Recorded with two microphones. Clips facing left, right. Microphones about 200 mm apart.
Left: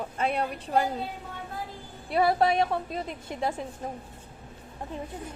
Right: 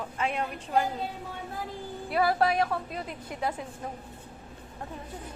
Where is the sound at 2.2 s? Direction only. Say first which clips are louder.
Left 2 dB; 25° left (ahead or behind).